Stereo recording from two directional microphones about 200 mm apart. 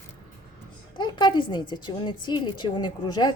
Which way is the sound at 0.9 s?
20° left (ahead or behind).